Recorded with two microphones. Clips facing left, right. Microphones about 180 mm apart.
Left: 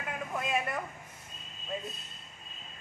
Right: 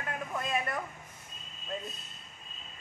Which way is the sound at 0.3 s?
5° left (ahead or behind).